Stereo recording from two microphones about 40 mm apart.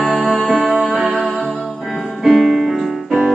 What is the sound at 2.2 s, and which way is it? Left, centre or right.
Music, centre.